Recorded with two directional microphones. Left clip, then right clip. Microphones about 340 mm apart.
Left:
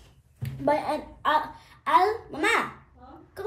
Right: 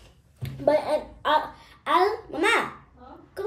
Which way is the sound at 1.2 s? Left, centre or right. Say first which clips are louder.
Left 2 dB; centre.